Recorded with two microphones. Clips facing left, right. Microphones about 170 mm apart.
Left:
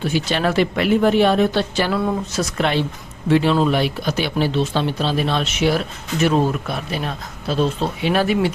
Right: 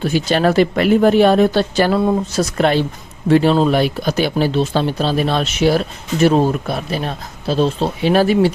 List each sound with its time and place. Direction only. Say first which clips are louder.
0.0 s speech: right 4 dB; 40° right (ahead or behind)
2.0 s speech: right 5 dB; 30° right (ahead or behind)